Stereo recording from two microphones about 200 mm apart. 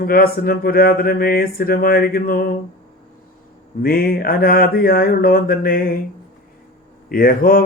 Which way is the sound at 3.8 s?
50° left (ahead or behind).